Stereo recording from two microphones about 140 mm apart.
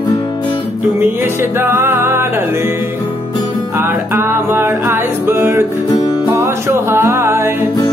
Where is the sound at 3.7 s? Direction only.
20° right (ahead or behind).